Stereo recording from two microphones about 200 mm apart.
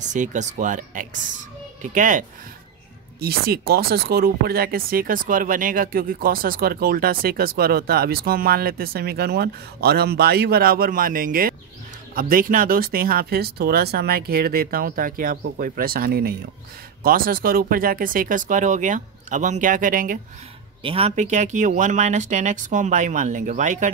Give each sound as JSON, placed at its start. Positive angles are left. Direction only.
{"t": 0.0, "sound": "speech", "side_deg": -40}
{"t": 3.2, "sound": "speech", "side_deg": -50}
{"t": 20.8, "sound": "speech", "side_deg": -30}